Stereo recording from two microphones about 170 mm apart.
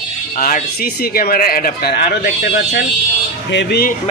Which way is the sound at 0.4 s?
55° left (ahead or behind).